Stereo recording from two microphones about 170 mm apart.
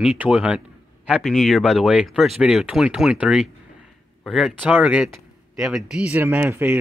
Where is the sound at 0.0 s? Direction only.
5° right (ahead or behind).